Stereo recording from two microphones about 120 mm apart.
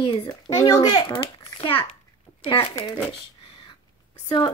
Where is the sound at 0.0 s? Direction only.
45° left (ahead or behind).